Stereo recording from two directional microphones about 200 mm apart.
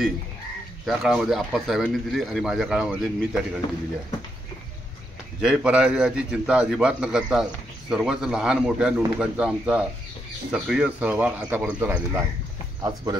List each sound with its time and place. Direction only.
0.8 s a man's voice: centre (ahead or behind)
5.4 s a man's voice: 5° right (ahead or behind); by 13.2 s 20° right (ahead or behind)